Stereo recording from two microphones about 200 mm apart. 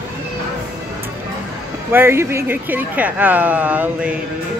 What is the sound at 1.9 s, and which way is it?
Speech, 10° right (ahead or behind).